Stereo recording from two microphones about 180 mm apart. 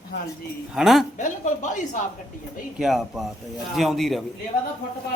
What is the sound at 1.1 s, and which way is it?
Speech, 45° left (ahead or behind).